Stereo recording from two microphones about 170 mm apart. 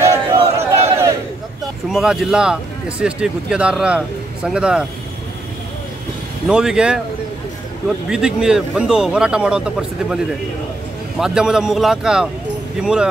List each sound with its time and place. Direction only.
0.0 s a sound: 15° right (ahead or behind)
1.9 s speech: centre (ahead or behind)
6.4 s speech: 5° right (ahead or behind)
8.1 s speech: 5° right (ahead or behind)